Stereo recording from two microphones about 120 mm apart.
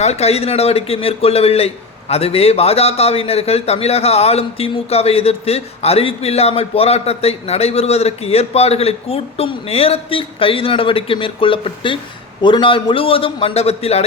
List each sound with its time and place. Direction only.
0.0 s a man's voice: 65° left (ahead or behind)